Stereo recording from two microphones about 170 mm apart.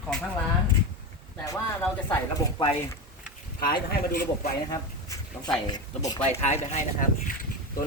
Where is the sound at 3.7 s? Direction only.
60° left (ahead or behind).